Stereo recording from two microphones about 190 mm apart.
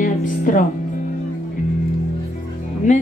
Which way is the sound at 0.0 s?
45° left (ahead or behind).